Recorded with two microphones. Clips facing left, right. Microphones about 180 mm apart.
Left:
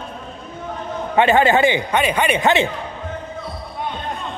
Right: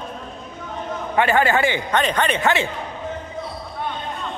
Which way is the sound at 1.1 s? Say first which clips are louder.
Left 4 dB; 20° left (ahead or behind).